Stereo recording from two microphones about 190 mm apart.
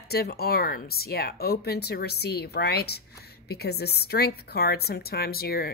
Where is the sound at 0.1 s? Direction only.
55° left (ahead or behind).